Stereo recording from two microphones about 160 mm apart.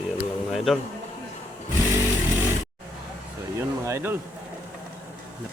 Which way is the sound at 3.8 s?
15° right (ahead or behind).